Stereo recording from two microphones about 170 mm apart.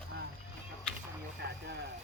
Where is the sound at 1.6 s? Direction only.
75° right (ahead or behind).